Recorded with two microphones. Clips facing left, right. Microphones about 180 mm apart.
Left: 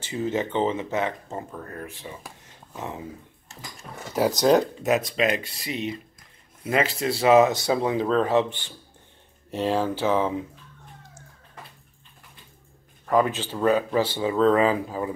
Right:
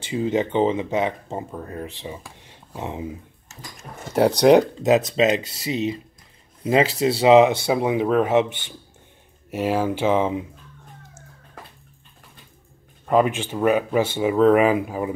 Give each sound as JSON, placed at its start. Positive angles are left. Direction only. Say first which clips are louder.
{"t": 0.0, "sound": "speech", "louder": "right 4 dB", "side_deg": -15}
{"t": 3.9, "sound": "speech", "louder": "right 1 dB", "side_deg": -30}
{"t": 4.8, "sound": "speech", "louder": "right 5 dB", "side_deg": -20}
{"t": 13.0, "sound": "speech", "louder": "right 3 dB", "side_deg": -20}